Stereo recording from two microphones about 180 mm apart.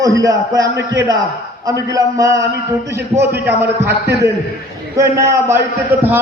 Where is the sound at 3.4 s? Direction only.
15° right (ahead or behind).